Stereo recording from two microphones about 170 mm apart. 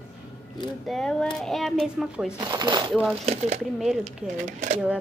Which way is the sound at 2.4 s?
25° right (ahead or behind).